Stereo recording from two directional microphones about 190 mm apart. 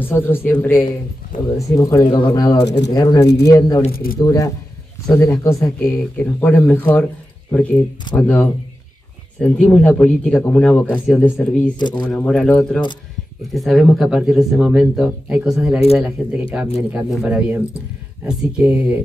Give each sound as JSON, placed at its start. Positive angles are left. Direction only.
{"t": 0.0, "sound": "speech", "side_deg": 10}
{"t": 1.3, "sound": "speech", "side_deg": 45}
{"t": 1.8, "sound": "speech", "side_deg": 15}
{"t": 3.9, "sound": "speech", "side_deg": 50}
{"t": 4.2, "sound": "speech", "side_deg": 20}